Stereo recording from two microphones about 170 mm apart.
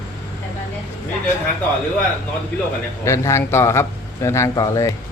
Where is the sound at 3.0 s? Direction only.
15° left (ahead or behind).